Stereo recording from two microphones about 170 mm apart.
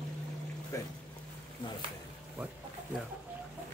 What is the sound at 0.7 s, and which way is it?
Speech, 20° left (ahead or behind).